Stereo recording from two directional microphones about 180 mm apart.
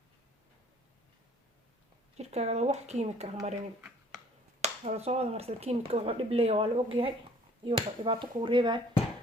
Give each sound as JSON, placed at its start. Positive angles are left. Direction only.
{"t": 2.1, "sound": "speech", "side_deg": -35}
{"t": 4.6, "sound": "speech", "side_deg": -35}